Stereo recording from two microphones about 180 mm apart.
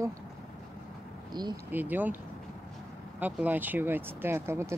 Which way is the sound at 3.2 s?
10° right (ahead or behind).